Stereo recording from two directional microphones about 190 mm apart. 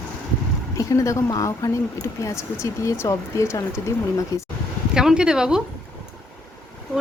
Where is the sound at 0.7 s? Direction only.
15° left (ahead or behind).